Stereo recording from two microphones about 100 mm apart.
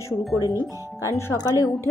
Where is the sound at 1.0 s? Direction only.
30° left (ahead or behind).